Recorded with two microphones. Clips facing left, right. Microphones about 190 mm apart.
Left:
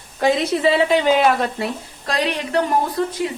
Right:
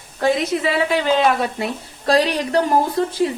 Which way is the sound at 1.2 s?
Centre (ahead or behind).